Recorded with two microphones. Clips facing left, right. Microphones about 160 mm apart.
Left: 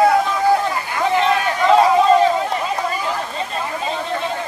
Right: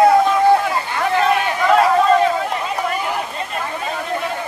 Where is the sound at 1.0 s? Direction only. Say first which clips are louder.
Even; 20° left (ahead or behind).